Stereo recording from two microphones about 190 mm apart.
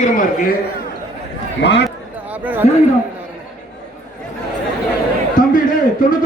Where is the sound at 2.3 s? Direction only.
10° right (ahead or behind).